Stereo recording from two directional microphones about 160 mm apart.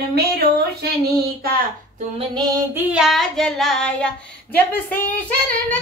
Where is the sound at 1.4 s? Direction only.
70° right (ahead or behind).